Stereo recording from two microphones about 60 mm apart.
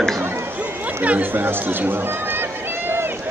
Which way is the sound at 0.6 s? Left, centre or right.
Right.